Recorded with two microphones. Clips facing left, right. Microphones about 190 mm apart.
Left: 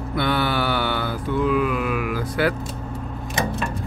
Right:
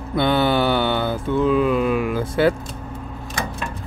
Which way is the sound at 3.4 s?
20° left (ahead or behind).